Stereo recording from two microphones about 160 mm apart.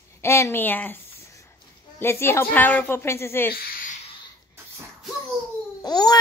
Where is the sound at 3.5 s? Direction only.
65° left (ahead or behind).